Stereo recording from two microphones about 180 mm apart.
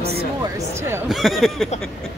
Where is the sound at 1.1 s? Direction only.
Centre (ahead or behind).